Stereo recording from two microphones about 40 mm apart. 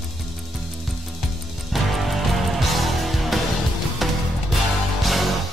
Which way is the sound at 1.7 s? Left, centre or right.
Centre.